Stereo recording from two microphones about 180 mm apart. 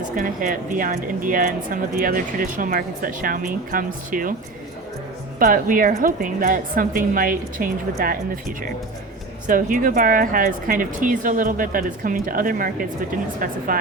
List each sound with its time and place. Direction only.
0.2 s speech: 50° right (ahead or behind)
5.4 s speech: 50° right (ahead or behind)